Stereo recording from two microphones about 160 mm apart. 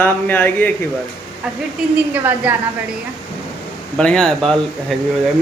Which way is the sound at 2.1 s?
10° right (ahead or behind).